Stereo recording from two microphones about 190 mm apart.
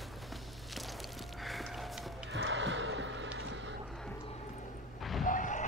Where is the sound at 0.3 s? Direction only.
Centre (ahead or behind).